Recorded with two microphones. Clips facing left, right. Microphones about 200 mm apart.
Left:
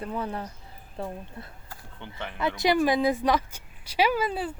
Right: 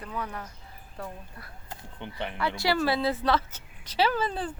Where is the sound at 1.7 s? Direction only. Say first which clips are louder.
Right 3 dB; 20° right (ahead or behind).